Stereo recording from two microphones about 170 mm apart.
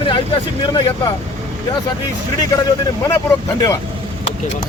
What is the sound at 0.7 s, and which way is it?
Speech, 25° left (ahead or behind).